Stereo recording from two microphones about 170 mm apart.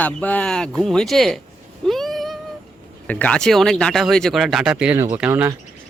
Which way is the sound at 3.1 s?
10° left (ahead or behind).